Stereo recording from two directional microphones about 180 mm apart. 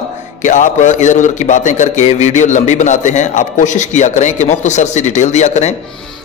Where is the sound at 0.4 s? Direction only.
45° left (ahead or behind).